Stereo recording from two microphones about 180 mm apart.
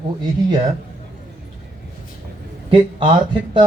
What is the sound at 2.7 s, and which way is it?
Speech, 25° right (ahead or behind).